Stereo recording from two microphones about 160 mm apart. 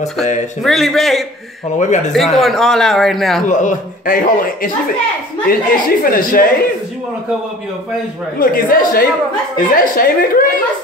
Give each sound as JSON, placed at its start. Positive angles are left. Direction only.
{"t": 0.7, "sound": "speech", "side_deg": 0}
{"t": 3.4, "sound": "a man's voice", "side_deg": 55}
{"t": 8.4, "sound": "a man's voice", "side_deg": 65}